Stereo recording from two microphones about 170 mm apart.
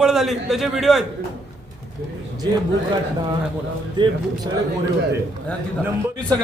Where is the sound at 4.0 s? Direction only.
25° right (ahead or behind).